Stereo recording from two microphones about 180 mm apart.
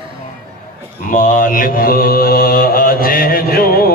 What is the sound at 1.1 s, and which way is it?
Mantra, 50° left (ahead or behind).